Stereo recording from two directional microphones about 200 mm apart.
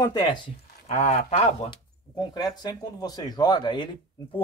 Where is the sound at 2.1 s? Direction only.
20° left (ahead or behind).